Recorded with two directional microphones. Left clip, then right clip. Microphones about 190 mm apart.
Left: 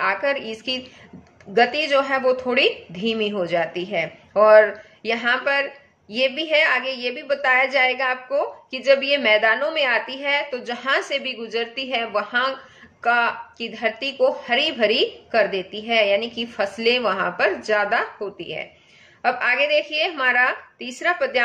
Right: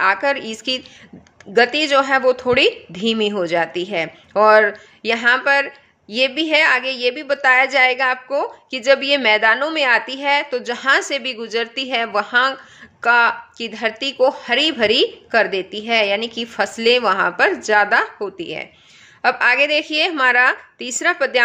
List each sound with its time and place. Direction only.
0.0 s a woman's voice: 55° right (ahead or behind)